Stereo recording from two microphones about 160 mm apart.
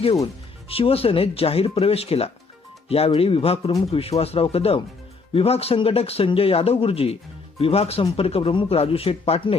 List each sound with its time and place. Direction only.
0.7 s speech: 35° left (ahead or behind)